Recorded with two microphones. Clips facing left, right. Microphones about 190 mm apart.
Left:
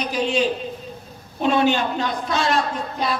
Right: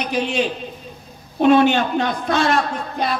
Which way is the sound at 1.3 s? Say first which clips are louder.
Right 5 dB; 60° right (ahead or behind).